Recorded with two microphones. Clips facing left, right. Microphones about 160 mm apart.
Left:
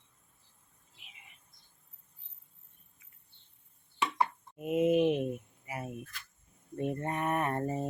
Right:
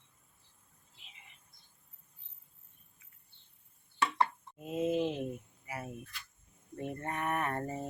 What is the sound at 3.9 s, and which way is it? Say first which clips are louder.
Chopping: even; 15° left (ahead or behind).